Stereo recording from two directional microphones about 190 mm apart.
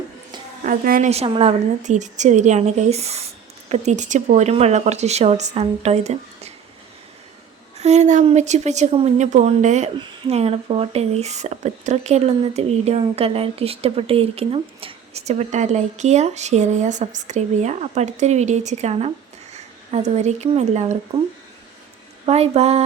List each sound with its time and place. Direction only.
0.6 s a woman's voice: 50° right (ahead or behind)
1.1 s speech: 30° right (ahead or behind)
7.8 s speech: 35° right (ahead or behind)
22.3 s speech: 35° right (ahead or behind)